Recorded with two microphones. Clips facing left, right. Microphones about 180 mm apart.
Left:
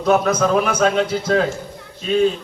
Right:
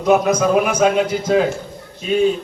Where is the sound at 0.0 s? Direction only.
15° right (ahead or behind).